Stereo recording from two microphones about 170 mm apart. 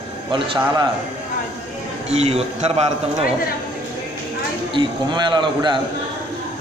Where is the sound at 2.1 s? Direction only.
40° right (ahead or behind).